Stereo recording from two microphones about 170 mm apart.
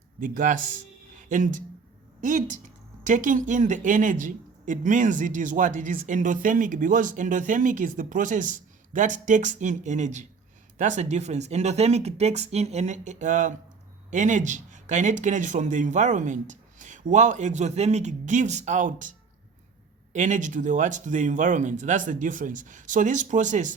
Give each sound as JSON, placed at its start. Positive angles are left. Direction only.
{"t": 0.2, "sound": "speech", "side_deg": -50}
{"t": 20.1, "sound": "speech", "side_deg": -45}